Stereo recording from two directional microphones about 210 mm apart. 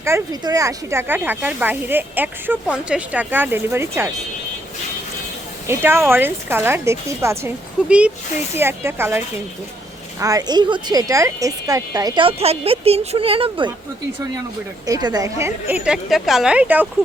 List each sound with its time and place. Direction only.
0.0 s speech: 15° right (ahead or behind)
5.6 s a woman's voice: 10° right (ahead or behind)
14.8 s speech: 20° right (ahead or behind)